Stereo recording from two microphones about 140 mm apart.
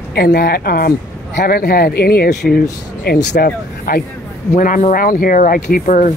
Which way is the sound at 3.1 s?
90° left.